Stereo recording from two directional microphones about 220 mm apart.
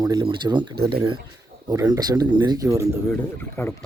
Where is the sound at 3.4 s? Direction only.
10° left (ahead or behind).